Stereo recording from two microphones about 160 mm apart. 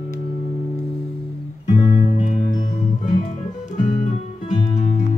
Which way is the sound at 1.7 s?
45° left (ahead or behind).